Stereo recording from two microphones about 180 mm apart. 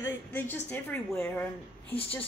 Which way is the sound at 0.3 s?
10° left (ahead or behind).